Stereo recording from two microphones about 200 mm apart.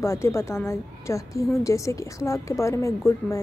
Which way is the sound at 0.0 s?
15° left (ahead or behind).